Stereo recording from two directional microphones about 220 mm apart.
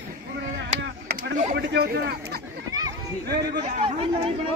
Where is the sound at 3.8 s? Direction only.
25° right (ahead or behind).